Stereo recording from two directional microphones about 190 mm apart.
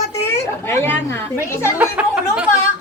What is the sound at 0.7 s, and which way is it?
Speech, 15° left (ahead or behind).